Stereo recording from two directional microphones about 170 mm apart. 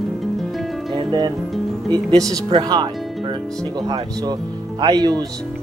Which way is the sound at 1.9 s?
20° right (ahead or behind).